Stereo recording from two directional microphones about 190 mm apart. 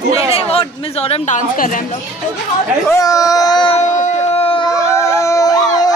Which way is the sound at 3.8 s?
40° left (ahead or behind).